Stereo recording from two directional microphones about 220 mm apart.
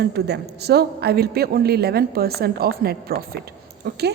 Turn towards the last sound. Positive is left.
turn(degrees=-45)  # may be behind; listen again after turning